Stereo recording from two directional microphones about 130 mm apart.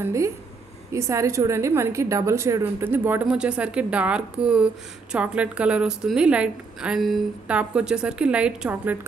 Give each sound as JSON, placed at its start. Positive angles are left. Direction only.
{"t": 0.0, "sound": "a woman's voice", "side_deg": -25}